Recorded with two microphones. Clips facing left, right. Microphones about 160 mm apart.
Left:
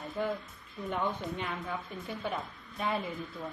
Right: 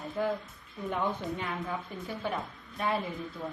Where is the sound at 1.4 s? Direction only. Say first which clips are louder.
Right 2 dB; centre (ahead or behind).